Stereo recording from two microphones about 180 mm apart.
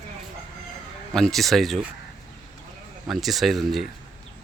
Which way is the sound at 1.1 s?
Centre (ahead or behind).